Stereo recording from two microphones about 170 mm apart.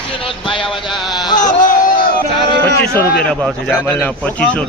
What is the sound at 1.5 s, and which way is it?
Crowd, 50° left (ahead or behind).